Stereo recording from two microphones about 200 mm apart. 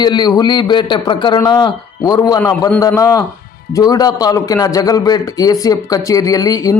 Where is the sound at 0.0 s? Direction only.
20° left (ahead or behind).